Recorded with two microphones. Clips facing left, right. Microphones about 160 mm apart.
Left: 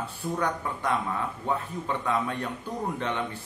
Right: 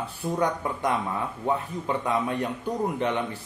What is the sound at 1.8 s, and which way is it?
Speech, 15° right (ahead or behind).